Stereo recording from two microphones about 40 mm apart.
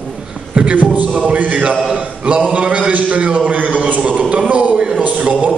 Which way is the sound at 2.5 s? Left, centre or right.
Right.